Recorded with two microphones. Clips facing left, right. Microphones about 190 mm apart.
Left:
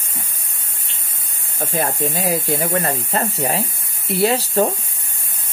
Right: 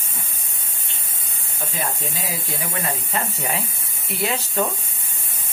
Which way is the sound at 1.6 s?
50° left (ahead or behind).